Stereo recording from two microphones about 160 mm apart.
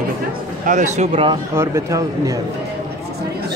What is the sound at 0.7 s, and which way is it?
Speech, 50° right (ahead or behind).